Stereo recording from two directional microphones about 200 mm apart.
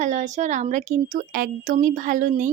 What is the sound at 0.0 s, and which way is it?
A woman's voice, 40° right (ahead or behind).